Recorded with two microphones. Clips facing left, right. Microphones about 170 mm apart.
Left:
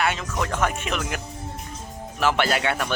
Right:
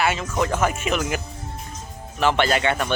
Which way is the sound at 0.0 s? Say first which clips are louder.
Right 3 dB; centre (ahead or behind).